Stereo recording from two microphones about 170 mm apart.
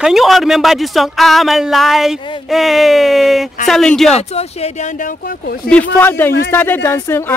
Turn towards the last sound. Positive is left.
turn(degrees=15)  # may be behind; listen again after turning